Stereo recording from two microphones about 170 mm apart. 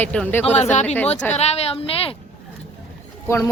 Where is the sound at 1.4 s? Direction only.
40° left (ahead or behind).